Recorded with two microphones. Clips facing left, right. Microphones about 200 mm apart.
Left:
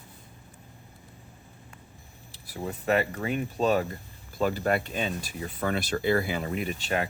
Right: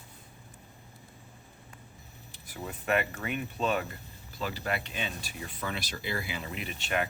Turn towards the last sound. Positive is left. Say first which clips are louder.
# left 4 dB
turn(degrees=35)  # may be behind; listen again after turning